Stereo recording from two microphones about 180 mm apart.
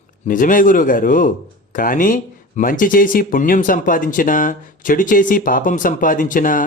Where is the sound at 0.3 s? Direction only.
50° left (ahead or behind).